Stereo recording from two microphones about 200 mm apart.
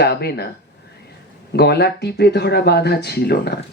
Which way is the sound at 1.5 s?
55° left (ahead or behind).